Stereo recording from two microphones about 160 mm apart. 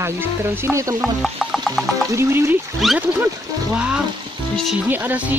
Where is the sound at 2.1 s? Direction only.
15° right (ahead or behind).